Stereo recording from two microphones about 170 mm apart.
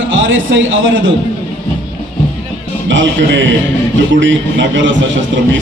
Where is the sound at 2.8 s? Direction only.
90° right.